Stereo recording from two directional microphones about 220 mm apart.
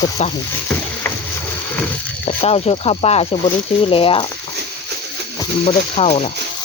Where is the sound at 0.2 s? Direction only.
30° left (ahead or behind).